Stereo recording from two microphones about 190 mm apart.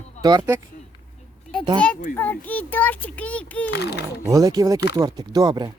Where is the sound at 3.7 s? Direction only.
60° left (ahead or behind).